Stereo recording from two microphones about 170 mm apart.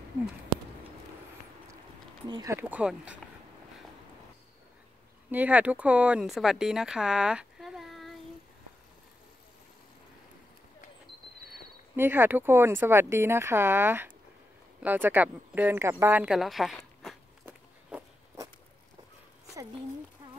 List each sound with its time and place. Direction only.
2.2 s speech: 25° right (ahead or behind)
2.5 s speech: 10° right (ahead or behind)
5.3 s speech: 10° right (ahead or behind)
12.0 s speech: 10° right (ahead or behind)
17.5 s walk: 15° right (ahead or behind)